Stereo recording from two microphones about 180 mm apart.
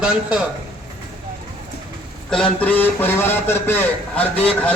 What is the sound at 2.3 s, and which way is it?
A man's voice, 5° left (ahead or behind).